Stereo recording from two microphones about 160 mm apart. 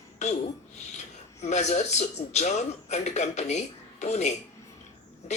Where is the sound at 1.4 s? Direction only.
45° left (ahead or behind).